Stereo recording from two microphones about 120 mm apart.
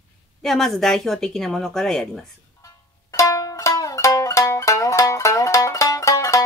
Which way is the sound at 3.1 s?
30° left (ahead or behind).